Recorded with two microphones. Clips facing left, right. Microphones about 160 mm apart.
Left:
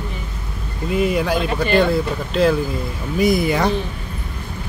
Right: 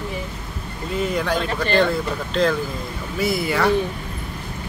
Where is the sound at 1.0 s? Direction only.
10° left (ahead or behind).